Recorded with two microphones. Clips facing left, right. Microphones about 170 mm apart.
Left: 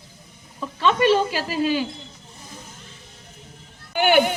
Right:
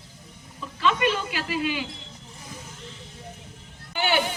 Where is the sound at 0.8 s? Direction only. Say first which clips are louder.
Left 6 dB; 35° left (ahead or behind).